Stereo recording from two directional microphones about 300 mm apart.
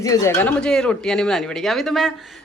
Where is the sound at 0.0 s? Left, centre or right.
Centre.